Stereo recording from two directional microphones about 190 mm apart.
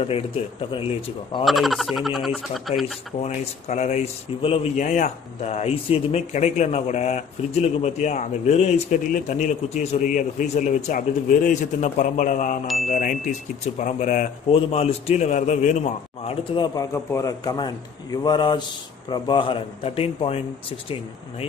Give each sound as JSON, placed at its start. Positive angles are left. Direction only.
{"t": 0.0, "sound": "a man's voice", "side_deg": 30}
{"t": 1.4, "sound": "speech", "side_deg": 0}
{"t": 3.2, "sound": "a man's voice", "side_deg": 35}
{"t": 16.5, "sound": "a man's voice", "side_deg": 20}